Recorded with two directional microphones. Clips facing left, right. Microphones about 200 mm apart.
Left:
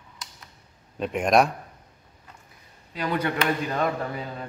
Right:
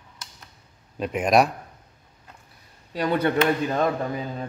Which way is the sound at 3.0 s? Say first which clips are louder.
Right 4 dB; 30° right (ahead or behind).